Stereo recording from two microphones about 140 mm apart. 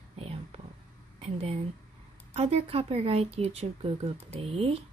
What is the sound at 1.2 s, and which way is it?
Speech, 50° right (ahead or behind).